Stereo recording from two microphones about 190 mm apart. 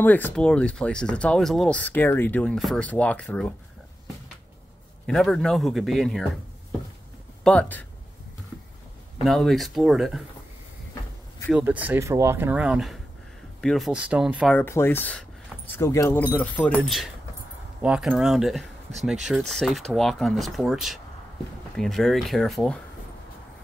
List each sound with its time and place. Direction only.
0.0 s speech: 10° left (ahead or behind)
5.0 s speech: centre (ahead or behind)
7.4 s speech: 5° left (ahead or behind)
9.2 s speech: centre (ahead or behind)
11.5 s speech: 10° right (ahead or behind)
14.6 s speech: 10° left (ahead or behind)